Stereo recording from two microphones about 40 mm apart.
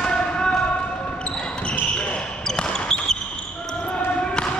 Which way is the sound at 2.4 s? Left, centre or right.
Centre.